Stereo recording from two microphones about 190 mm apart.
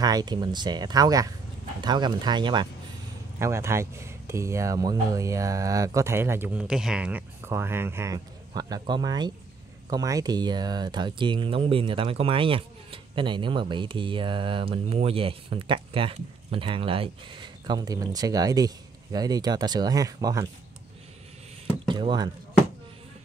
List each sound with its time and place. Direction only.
0.0 s speech: 20° right (ahead or behind)
21.8 s speech: 25° right (ahead or behind)